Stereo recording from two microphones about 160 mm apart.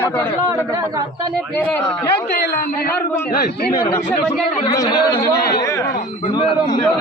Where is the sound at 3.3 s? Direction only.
80° left.